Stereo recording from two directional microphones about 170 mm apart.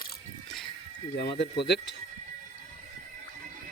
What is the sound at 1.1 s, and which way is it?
Speech, 85° left.